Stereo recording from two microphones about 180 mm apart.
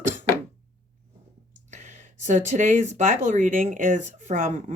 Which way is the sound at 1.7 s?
40° right (ahead or behind).